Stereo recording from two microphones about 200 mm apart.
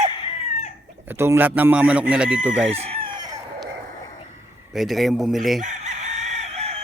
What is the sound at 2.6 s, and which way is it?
Speech, 30° right (ahead or behind).